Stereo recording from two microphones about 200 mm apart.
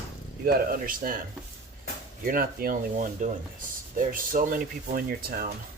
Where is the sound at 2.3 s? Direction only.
45° right (ahead or behind).